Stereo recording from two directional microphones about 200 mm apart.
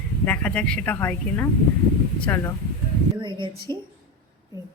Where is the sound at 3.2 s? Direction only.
25° right (ahead or behind).